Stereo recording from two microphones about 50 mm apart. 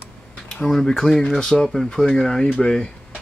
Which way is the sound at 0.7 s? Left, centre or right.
Centre.